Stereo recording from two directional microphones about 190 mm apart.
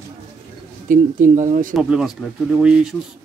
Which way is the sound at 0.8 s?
45° right (ahead or behind).